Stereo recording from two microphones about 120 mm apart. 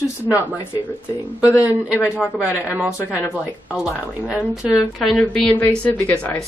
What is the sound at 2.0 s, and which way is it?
A woman's voice, 5° right (ahead or behind).